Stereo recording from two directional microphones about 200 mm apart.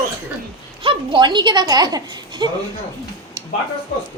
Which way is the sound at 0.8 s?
25° right (ahead or behind).